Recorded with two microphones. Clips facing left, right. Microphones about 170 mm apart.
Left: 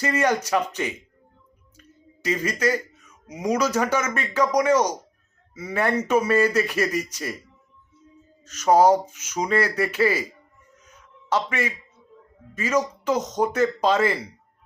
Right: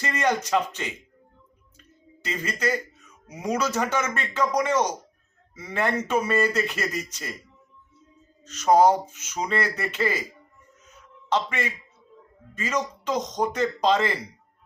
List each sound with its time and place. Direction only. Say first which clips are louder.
0.0 s speech: left 3 dB; 10° left (ahead or behind)
2.2 s speech: left 4 dB; 10° left (ahead or behind)
8.4 s speech: left 1 dB; 10° left (ahead or behind)
10.8 s a sound: left 1 dB; 10° left (ahead or behind)
12.5 s speech: left 5 dB; 10° left (ahead or behind)